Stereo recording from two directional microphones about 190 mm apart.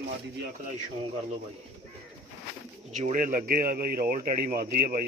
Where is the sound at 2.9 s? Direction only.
40° right (ahead or behind).